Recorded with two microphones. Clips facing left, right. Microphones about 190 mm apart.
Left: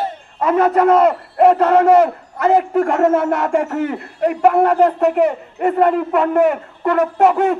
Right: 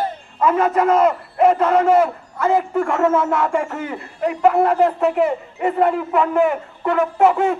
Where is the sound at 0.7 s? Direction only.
65° left (ahead or behind).